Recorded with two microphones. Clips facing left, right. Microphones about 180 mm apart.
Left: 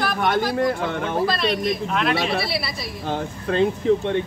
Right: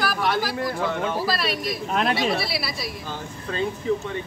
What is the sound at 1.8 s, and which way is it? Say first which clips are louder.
Speech: right 4 dB; 40° right (ahead or behind).